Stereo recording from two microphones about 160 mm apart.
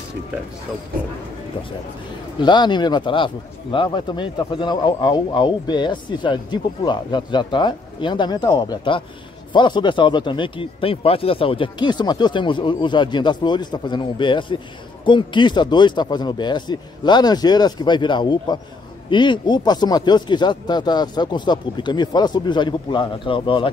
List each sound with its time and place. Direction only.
2.4 s speech: 30° left (ahead or behind)